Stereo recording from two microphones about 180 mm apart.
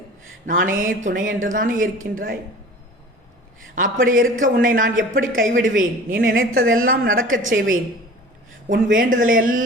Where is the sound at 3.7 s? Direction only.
50° right (ahead or behind).